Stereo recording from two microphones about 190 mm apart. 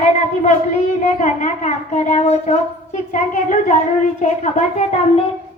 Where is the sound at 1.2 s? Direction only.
40° left (ahead or behind).